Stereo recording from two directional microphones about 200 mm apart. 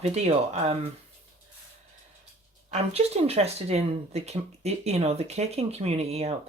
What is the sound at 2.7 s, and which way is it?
Speech, 30° right (ahead or behind).